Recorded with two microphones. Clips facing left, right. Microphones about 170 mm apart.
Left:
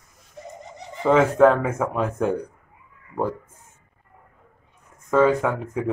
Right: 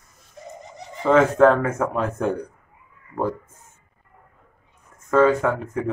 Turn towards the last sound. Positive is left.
turn(degrees=15)  # may be behind; listen again after turning